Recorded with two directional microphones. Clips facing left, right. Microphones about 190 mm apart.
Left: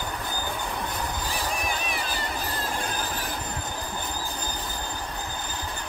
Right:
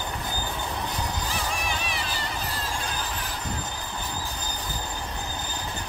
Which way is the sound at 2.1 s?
55° left (ahead or behind).